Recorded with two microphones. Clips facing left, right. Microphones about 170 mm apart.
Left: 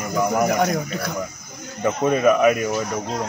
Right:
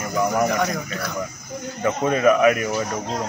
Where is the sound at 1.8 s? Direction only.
10° left (ahead or behind).